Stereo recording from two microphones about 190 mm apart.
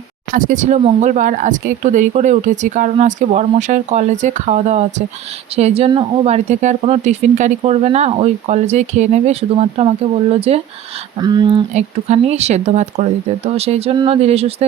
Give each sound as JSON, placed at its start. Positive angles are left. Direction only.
{"t": 0.3, "sound": "speech", "side_deg": -45}
{"t": 11.7, "sound": "speech", "side_deg": -35}